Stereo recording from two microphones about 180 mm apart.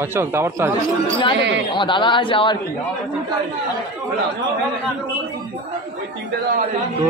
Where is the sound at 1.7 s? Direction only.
25° left (ahead or behind).